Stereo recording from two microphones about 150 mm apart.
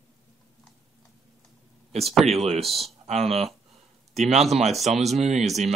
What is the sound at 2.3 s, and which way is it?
Speech, 45° right (ahead or behind).